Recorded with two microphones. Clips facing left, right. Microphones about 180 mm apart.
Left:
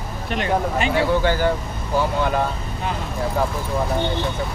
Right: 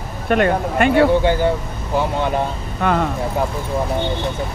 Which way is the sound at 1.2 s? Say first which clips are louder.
Right 3 dB; 25° right (ahead or behind).